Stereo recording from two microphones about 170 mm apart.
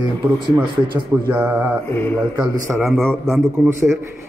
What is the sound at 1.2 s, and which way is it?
Speech, 10° right (ahead or behind).